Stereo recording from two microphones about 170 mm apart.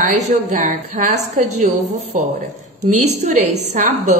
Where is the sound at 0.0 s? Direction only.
45° right (ahead or behind).